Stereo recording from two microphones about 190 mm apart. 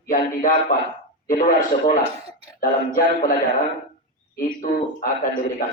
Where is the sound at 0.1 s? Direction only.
45° left (ahead or behind).